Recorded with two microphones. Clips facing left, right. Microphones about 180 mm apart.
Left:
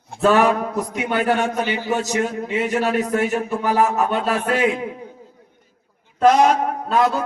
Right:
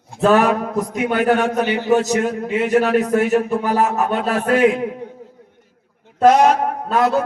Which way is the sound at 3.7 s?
40° right (ahead or behind).